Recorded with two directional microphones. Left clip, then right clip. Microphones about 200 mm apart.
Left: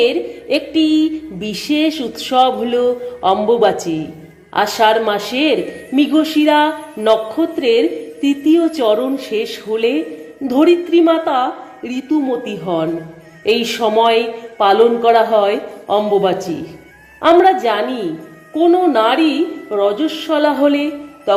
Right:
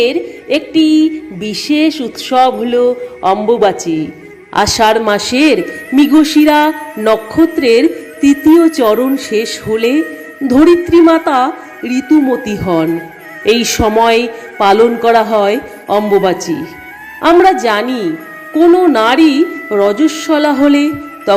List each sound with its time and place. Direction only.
0.0 s music: 20° right (ahead or behind)
9.2 s a man's voice: 20° right (ahead or behind)
12.6 s music: 20° right (ahead or behind)
13.5 s a man's voice: 20° right (ahead or behind)